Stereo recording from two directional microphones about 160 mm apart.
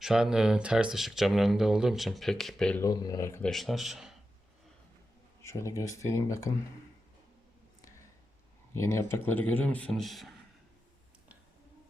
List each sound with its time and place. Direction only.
0.0 s speech: 5° right (ahead or behind)
2.8 s speech: 25° left (ahead or behind)
3.4 s speech: centre (ahead or behind)
5.4 s speech: 20° left (ahead or behind)
8.7 s a man's voice: 15° left (ahead or behind); by 10.3 s centre (ahead or behind)